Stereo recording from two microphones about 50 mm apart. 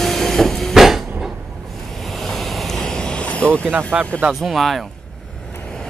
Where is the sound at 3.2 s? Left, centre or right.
Left.